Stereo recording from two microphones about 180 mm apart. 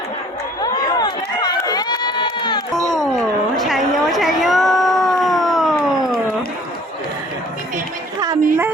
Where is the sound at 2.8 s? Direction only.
Centre (ahead or behind).